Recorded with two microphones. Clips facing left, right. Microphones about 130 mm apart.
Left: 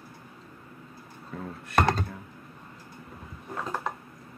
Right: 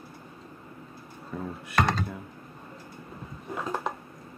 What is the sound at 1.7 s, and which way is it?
Computer keyboard, 50° left (ahead or behind).